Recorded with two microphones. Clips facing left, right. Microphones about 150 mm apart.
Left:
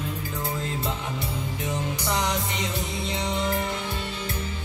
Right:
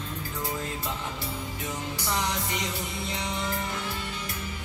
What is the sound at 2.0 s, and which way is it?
Music, 20° left (ahead or behind).